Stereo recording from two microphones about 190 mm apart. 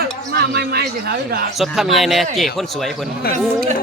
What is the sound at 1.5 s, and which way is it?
Speech, centre (ahead or behind).